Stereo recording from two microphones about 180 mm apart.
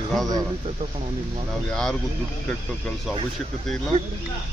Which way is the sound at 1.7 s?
5° left (ahead or behind).